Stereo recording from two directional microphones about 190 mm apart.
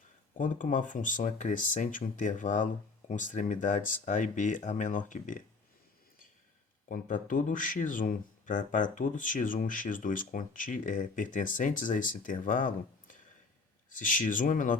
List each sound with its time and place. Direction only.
0.3 s speech: 45° left (ahead or behind)
6.8 s speech: 45° left (ahead or behind)